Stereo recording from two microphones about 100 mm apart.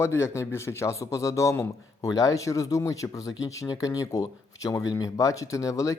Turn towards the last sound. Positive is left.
turn(degrees=35)  # may be behind; listen again after turning